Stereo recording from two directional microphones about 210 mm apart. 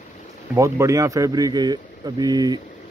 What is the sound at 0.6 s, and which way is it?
Speech, 15° right (ahead or behind).